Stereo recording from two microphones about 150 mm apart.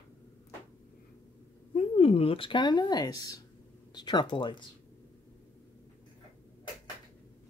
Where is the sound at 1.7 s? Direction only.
40° left (ahead or behind).